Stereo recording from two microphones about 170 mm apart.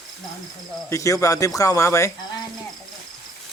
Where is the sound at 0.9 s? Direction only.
20° left (ahead or behind).